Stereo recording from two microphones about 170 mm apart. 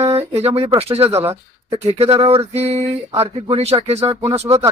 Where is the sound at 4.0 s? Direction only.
20° right (ahead or behind).